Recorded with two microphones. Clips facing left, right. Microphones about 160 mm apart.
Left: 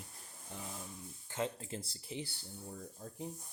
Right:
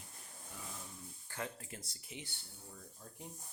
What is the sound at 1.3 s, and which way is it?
Speech, 20° left (ahead or behind).